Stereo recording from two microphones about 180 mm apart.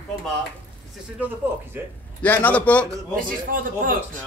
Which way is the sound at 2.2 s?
10° left (ahead or behind).